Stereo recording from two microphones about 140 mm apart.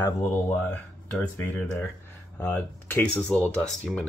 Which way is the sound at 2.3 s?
15° left (ahead or behind).